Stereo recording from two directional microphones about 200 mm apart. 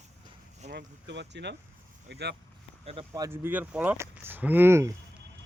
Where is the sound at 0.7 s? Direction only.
60° right (ahead or behind).